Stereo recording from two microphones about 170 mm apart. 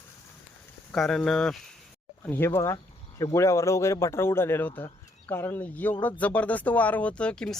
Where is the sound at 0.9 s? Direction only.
Centre (ahead or behind).